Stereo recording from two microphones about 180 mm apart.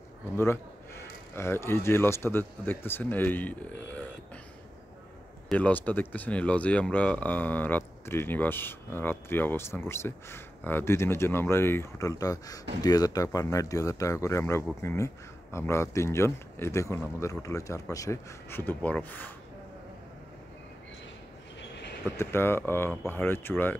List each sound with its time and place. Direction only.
1.3 s speech: 15° left (ahead or behind)
5.5 s speech: 10° left (ahead or behind)
22.1 s speech: 15° left (ahead or behind)